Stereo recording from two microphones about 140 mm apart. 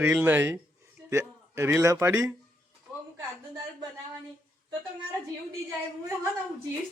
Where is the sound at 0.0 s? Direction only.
15° right (ahead or behind).